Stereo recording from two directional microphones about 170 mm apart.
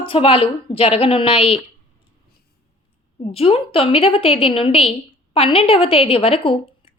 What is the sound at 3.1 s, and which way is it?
A woman's voice, 35° left (ahead or behind).